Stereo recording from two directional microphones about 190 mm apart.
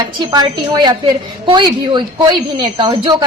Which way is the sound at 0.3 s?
25° right (ahead or behind).